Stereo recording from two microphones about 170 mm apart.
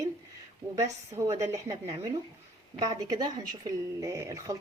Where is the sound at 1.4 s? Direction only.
20° right (ahead or behind).